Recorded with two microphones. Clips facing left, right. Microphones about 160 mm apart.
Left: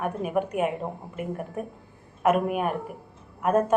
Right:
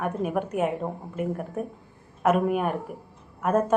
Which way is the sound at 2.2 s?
5° left (ahead or behind).